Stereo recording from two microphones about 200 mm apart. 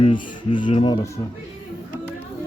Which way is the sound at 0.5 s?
25° left (ahead or behind).